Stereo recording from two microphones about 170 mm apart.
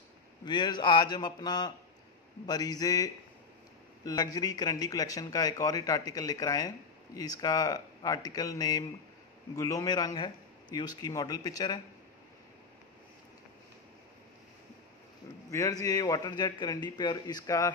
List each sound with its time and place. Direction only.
0.5 s a man's voice: 25° left (ahead or behind)
15.5 s a man's voice: 20° left (ahead or behind)